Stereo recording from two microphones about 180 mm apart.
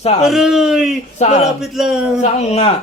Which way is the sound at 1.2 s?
40° left (ahead or behind).